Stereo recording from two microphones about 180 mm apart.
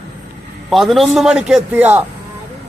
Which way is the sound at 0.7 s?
Centre (ahead or behind).